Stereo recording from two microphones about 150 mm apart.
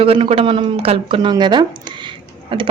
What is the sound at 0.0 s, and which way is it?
Speech, 40° right (ahead or behind).